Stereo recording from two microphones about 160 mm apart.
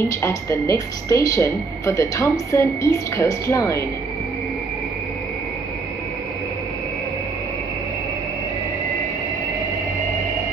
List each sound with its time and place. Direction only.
0.2 s speech: 20° left (ahead or behind)